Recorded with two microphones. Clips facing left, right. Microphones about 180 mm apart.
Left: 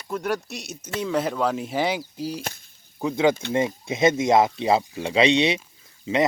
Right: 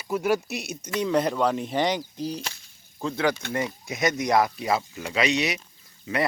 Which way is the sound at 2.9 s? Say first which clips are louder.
Left 5 dB; 20° left (ahead or behind).